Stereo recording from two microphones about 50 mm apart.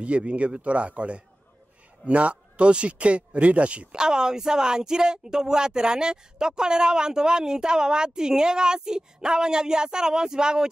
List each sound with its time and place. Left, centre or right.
0.0 s speech: right
3.9 s speech: centre